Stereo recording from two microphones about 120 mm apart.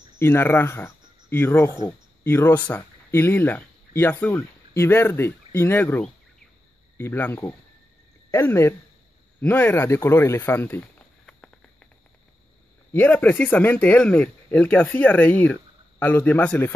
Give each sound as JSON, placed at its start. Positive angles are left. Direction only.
{"t": 0.2, "sound": "speech", "side_deg": 20}
{"t": 11.2, "sound": "a sound", "side_deg": 10}
{"t": 12.9, "sound": "speech", "side_deg": 15}